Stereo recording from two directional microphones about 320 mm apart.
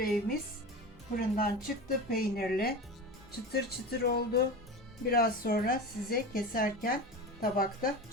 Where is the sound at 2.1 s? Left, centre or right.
Left.